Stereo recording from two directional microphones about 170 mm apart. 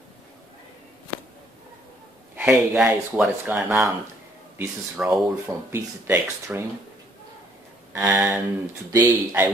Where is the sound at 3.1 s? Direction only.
5° right (ahead or behind).